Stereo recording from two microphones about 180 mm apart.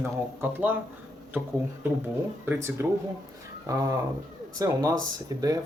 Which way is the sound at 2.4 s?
10° right (ahead or behind).